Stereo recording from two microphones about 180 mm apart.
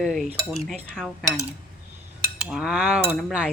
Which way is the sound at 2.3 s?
Centre (ahead or behind).